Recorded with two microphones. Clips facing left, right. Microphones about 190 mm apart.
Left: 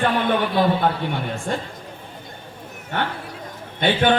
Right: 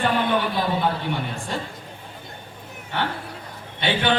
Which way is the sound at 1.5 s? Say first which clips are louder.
Left 4 dB; 50° left (ahead or behind).